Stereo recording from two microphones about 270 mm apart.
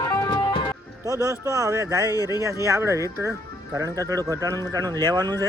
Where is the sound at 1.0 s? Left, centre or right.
Centre.